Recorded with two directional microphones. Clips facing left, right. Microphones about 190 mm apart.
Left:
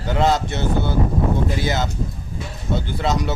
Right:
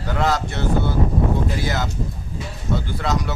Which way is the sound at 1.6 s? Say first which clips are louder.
Left 2 dB; 20° left (ahead or behind).